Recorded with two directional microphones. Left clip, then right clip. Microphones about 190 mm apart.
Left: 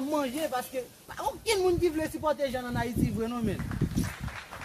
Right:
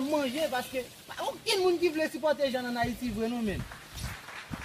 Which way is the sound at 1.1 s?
25° left (ahead or behind).